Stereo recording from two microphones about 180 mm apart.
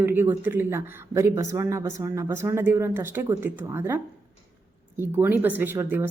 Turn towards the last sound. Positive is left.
turn(degrees=-10)  # may be behind; listen again after turning